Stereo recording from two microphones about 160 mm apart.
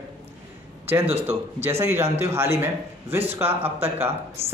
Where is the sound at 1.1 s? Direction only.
15° right (ahead or behind).